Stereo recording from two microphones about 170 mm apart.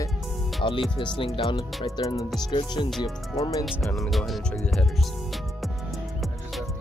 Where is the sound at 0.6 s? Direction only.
30° left (ahead or behind).